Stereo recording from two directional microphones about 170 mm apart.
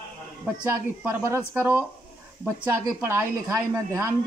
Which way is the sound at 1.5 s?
15° right (ahead or behind).